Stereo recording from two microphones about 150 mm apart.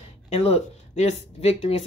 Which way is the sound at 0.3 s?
45° left (ahead or behind).